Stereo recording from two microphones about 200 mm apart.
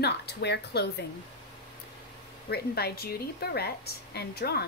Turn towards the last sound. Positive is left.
turn(degrees=55)  # may be behind; listen again after turning